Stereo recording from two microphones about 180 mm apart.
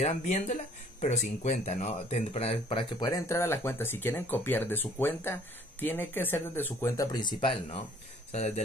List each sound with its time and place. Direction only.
0.0 s speech: 40° left (ahead or behind)